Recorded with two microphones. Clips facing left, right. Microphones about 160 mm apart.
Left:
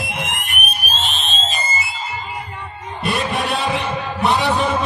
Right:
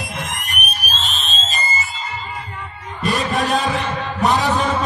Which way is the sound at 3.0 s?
40° right (ahead or behind).